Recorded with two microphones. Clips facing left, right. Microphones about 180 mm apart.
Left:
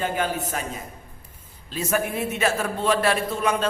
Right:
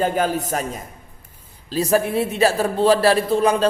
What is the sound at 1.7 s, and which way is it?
A man's voice, 35° right (ahead or behind).